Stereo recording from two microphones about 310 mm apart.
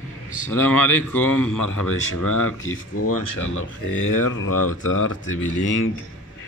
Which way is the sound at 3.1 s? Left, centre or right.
Left.